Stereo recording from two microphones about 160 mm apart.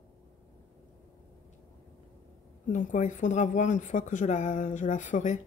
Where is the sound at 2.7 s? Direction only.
50° left (ahead or behind).